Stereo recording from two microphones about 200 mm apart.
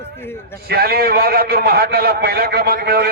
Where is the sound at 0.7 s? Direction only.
50° right (ahead or behind).